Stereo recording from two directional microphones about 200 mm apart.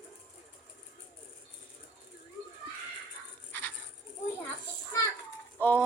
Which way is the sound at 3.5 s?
10° left (ahead or behind).